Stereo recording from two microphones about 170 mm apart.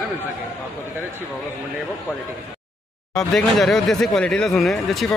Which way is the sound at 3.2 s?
Centre (ahead or behind).